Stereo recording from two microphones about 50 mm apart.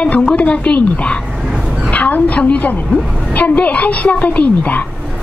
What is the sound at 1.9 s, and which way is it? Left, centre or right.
A woman's voice, left.